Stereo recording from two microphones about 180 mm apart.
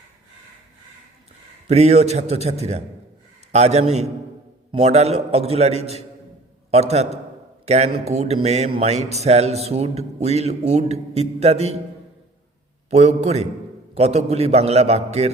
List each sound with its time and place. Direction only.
1.6 s speech: 35° right (ahead or behind)
12.9 s speech: 35° right (ahead or behind)